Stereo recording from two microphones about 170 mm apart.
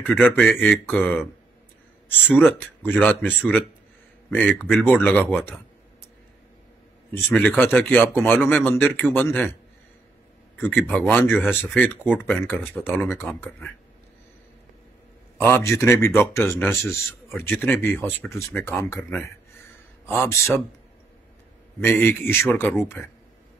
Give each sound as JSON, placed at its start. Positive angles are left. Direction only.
{"t": 0.0, "sound": "speech", "side_deg": 10}
{"t": 7.1, "sound": "speech", "side_deg": 10}
{"t": 11.0, "sound": "speech", "side_deg": 10}
{"t": 15.4, "sound": "speech", "side_deg": 15}
{"t": 21.7, "sound": "speech", "side_deg": 10}